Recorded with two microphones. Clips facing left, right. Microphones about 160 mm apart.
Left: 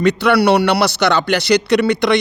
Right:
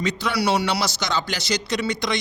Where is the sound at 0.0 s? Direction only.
65° left (ahead or behind).